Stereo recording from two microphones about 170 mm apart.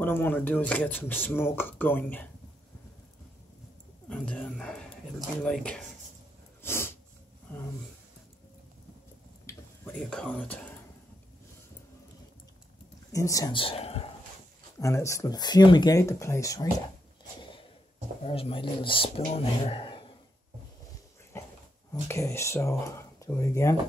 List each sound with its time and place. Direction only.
0.0 s speech: 10° left (ahead or behind)
4.1 s speech: 5° left (ahead or behind)
6.6 s sneeze: 15° left (ahead or behind)
9.5 s speech: 10° left (ahead or behind)
13.1 s speech: 20° left (ahead or behind)
13.6 s speech: 35° left (ahead or behind)
14.8 s speech: 15° left (ahead or behind)
18.2 s speech: 35° left (ahead or behind)
21.3 s dog: 15° left (ahead or behind)
22.0 s speech: 15° left (ahead or behind)